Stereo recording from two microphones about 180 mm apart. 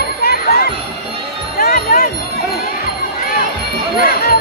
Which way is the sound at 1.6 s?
55° left (ahead or behind).